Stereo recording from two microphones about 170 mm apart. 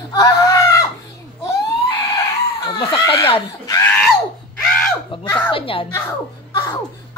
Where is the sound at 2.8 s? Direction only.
30° left (ahead or behind).